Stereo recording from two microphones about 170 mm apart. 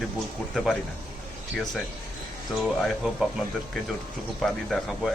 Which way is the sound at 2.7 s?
Centre (ahead or behind).